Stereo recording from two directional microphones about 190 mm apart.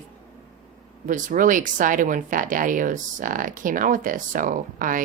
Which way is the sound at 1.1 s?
45° right (ahead or behind).